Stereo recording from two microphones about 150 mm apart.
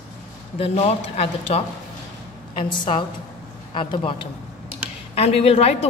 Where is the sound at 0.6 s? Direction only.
45° left (ahead or behind).